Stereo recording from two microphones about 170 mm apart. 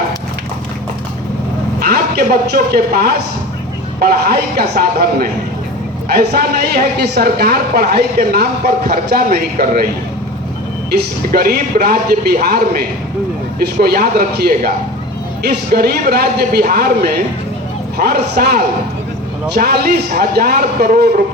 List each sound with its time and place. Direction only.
1.8 s a man's voice: 65° right (ahead or behind)
10.9 s speech: 60° right (ahead or behind)